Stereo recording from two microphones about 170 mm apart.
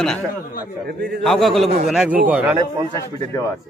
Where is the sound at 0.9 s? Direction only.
75° right (ahead or behind).